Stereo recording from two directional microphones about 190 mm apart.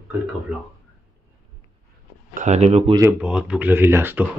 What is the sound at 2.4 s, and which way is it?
Speech, 35° right (ahead or behind).